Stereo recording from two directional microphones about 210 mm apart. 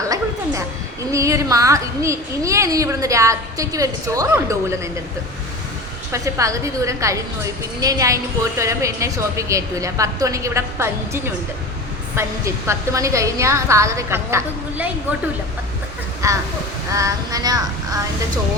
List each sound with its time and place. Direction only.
1.1 s a woman's voice: 15° right (ahead or behind)
6.1 s a woman's voice: 15° right (ahead or behind)
12.6 s a woman's voice: 15° right (ahead or behind)
16.2 s a woman's voice: 15° right (ahead or behind)